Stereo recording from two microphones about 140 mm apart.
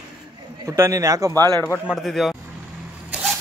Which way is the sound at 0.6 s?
20° right (ahead or behind).